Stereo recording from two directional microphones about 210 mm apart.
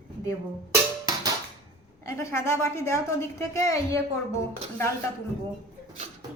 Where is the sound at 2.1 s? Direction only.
15° left (ahead or behind).